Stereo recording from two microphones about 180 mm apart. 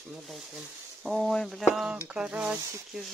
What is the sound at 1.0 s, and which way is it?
Speech, centre (ahead or behind).